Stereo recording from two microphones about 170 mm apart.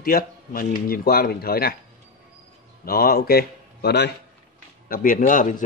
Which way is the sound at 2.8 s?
60° left (ahead or behind).